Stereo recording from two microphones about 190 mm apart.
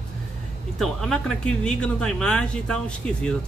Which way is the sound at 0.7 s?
Centre (ahead or behind).